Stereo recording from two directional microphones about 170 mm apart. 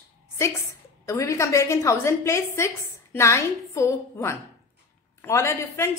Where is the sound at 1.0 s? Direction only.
20° left (ahead or behind).